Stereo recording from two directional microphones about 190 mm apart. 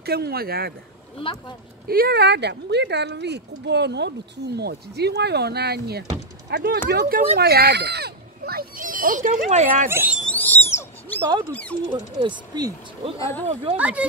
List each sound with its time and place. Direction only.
0.0 s speech: 55° right (ahead or behind)
1.9 s speech: 55° right (ahead or behind); by 9.8 s 35° right (ahead or behind)
9.8 s speech: 10° right (ahead or behind)
10.2 s a sound: 10° left (ahead or behind)
10.7 s owl: 15° left (ahead or behind)
11.9 s speech: 25° right (ahead or behind)
13.2 s speech: 10° left (ahead or behind)
13.7 s speech: 5° right (ahead or behind)